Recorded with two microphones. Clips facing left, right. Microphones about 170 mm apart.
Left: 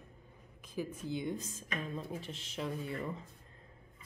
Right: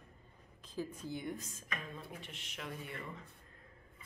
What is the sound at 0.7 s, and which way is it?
A woman's voice, 15° left (ahead or behind).